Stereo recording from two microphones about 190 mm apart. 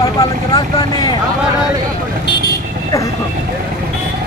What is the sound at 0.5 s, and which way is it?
Speech, 20° left (ahead or behind).